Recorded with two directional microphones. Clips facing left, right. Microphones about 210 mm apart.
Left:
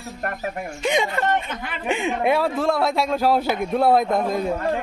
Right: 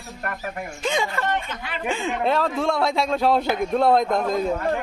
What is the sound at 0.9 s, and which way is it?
A man's voice, 20° left (ahead or behind).